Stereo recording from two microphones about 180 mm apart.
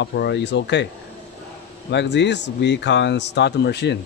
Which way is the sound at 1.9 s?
75° left (ahead or behind).